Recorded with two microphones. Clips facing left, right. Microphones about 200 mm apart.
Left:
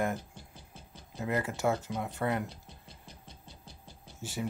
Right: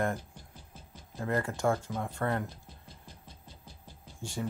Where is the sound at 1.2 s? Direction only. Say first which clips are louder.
Right 1 dB; 20° left (ahead or behind).